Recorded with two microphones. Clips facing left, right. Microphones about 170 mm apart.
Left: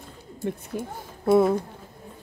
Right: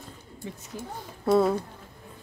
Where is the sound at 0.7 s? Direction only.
55° left (ahead or behind).